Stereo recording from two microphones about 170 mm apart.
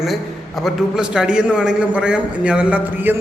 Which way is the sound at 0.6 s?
5° right (ahead or behind).